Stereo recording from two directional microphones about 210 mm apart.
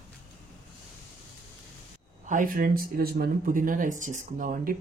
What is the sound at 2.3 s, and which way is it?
Speech, 40° right (ahead or behind).